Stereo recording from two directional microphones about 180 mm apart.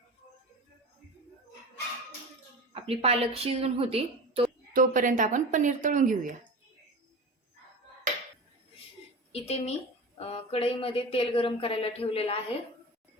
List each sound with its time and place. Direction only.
2.7 s a woman's voice: 30° right (ahead or behind)
4.7 s a woman's voice: 50° right (ahead or behind)
9.3 s speech: 35° left (ahead or behind)